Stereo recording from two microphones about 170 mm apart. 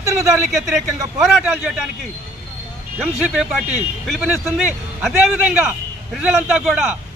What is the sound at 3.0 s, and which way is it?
A man's voice, 5° right (ahead or behind).